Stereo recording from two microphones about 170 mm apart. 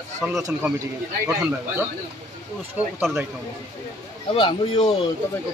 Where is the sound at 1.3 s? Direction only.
5° right (ahead or behind).